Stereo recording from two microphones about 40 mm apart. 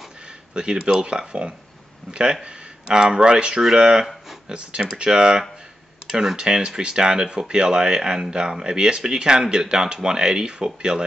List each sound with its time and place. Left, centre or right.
0.6 s speech: centre